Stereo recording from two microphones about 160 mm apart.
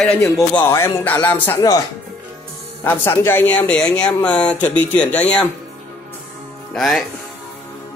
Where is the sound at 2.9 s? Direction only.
15° left (ahead or behind).